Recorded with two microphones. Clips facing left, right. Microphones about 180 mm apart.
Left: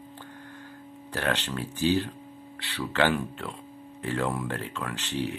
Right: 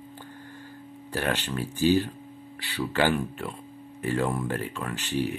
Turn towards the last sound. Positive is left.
turn(degrees=-10)  # may be behind; listen again after turning